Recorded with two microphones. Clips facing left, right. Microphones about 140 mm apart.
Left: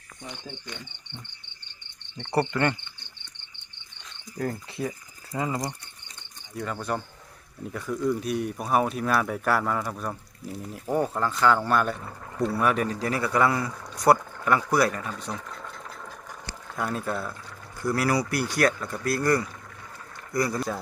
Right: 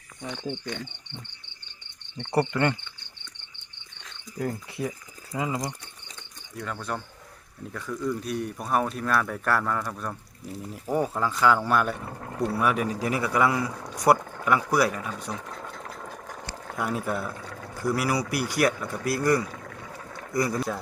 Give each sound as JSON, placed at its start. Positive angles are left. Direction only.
{"t": 2.1, "sound": "speech", "side_deg": -15}
{"t": 4.4, "sound": "speech", "side_deg": -10}
{"t": 6.6, "sound": "speech", "side_deg": 5}
{"t": 16.7, "sound": "speech", "side_deg": -10}